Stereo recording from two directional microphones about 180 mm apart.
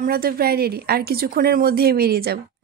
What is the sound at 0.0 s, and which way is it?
Speech, 55° right (ahead or behind).